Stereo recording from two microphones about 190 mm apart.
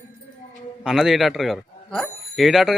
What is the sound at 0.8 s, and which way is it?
Speech, centre (ahead or behind).